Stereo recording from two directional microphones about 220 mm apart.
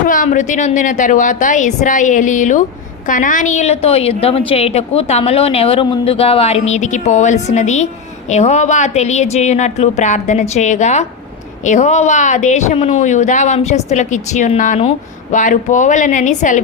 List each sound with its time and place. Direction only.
0.1 s a woman's voice: 35° left (ahead or behind)